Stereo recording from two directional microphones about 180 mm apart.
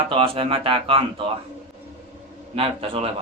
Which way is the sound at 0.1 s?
30° right (ahead or behind).